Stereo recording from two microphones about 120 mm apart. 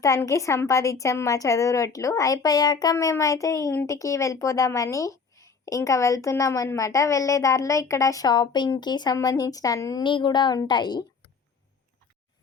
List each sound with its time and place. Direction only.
0.0 s a woman's voice: 25° left (ahead or behind)
10.0 s a woman's voice: 40° left (ahead or behind)